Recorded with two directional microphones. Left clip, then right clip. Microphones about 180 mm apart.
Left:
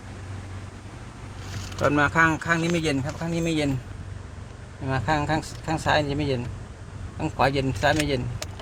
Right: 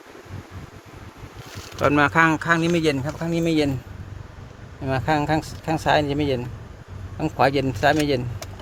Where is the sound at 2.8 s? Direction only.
50° right (ahead or behind).